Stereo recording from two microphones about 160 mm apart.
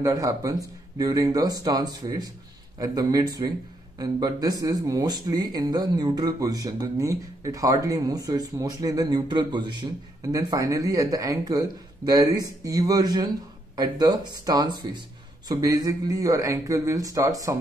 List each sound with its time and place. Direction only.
0.0 s speech: 20° right (ahead or behind)